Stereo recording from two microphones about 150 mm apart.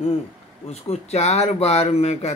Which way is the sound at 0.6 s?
45° left (ahead or behind).